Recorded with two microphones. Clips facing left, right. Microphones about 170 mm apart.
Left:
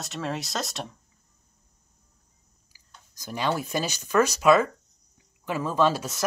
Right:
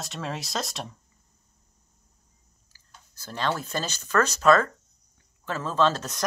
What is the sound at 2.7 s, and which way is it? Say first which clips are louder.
Speech: even; 15° left (ahead or behind).